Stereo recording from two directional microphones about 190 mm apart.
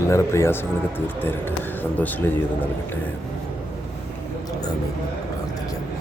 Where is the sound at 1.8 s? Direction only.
10° left (ahead or behind).